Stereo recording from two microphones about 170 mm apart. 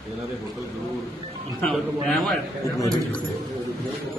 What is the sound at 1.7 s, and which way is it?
Speech, centre (ahead or behind).